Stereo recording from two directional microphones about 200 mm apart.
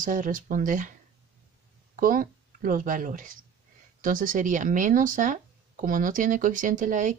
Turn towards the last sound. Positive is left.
turn(degrees=-40)  # may be behind; listen again after turning